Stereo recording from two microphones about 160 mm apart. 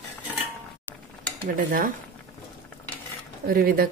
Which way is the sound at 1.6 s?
60° right (ahead or behind).